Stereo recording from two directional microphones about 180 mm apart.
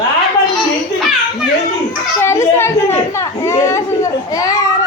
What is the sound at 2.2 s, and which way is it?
A child's voice, 15° left (ahead or behind).